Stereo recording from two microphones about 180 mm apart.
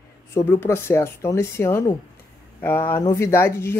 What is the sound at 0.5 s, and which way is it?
Speech, 15° left (ahead or behind).